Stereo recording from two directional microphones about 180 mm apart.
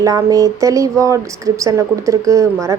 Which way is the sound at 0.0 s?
20° right (ahead or behind).